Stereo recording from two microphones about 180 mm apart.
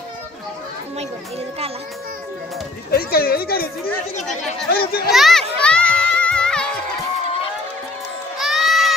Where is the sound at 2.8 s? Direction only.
55° left (ahead or behind).